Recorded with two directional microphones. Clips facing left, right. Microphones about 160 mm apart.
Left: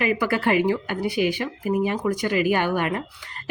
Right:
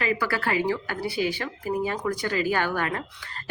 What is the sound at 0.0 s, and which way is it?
A woman's voice, 15° left (ahead or behind).